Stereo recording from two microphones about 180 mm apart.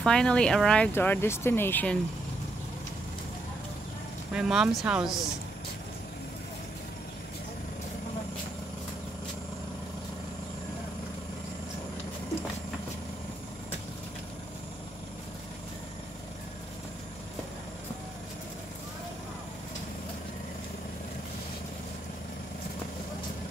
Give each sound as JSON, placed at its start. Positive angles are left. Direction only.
{"t": 0.0, "sound": "speech", "side_deg": 5}
{"t": 4.3, "sound": "speech", "side_deg": -5}